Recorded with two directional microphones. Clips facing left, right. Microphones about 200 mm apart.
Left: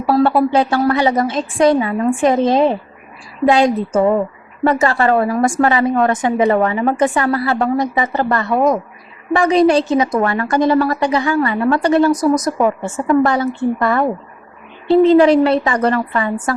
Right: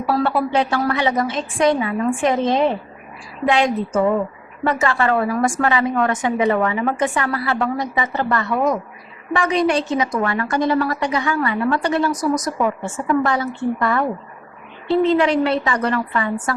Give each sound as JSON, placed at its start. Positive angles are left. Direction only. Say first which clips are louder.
{"t": 0.1, "sound": "a woman's voice", "louder": "left 6 dB", "side_deg": 35}